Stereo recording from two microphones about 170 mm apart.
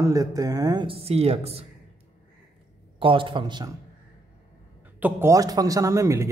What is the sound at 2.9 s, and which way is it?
Speech, 30° right (ahead or behind).